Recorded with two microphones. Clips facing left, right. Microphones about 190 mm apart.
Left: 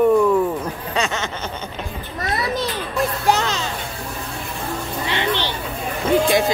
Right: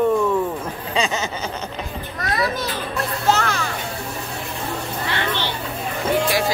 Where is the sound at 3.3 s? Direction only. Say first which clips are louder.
Right 1 dB; 20° left (ahead or behind).